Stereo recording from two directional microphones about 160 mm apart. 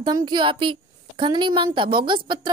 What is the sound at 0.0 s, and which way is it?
A woman's voice, 25° right (ahead or behind).